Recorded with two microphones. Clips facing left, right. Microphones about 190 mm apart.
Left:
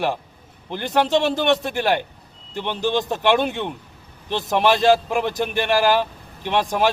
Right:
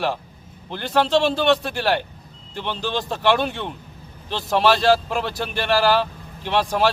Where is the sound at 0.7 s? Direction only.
15° left (ahead or behind).